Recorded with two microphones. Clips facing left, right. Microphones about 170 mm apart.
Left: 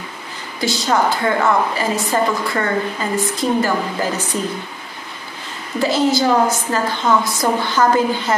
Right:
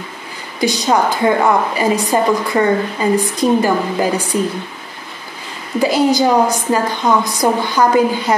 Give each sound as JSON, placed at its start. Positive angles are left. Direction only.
{"t": 0.6, "sound": "a woman's voice", "side_deg": -15}
{"t": 5.8, "sound": "a woman's voice", "side_deg": -15}